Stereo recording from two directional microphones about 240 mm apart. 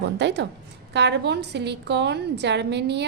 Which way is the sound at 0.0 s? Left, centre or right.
Right.